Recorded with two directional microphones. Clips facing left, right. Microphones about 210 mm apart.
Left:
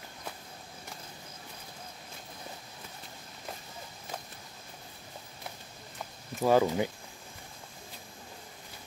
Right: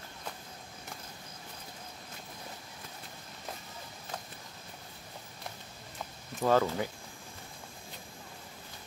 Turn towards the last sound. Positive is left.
turn(degrees=15)  # may be behind; listen again after turning